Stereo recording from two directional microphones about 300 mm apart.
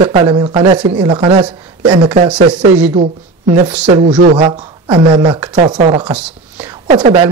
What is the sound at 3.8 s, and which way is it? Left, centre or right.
Speech, centre.